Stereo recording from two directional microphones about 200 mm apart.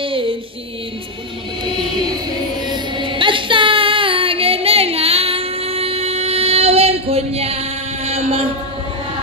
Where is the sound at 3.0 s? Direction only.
25° right (ahead or behind).